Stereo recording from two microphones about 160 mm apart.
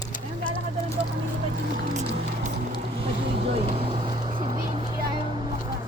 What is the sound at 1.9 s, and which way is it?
Music, 45° right (ahead or behind).